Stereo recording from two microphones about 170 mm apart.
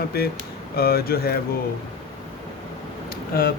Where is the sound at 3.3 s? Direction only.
60° left (ahead or behind).